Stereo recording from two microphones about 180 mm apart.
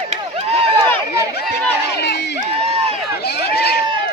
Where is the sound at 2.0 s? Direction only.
70° left (ahead or behind).